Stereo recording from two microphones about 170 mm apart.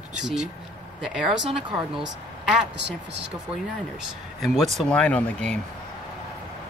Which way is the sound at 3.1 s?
90° right.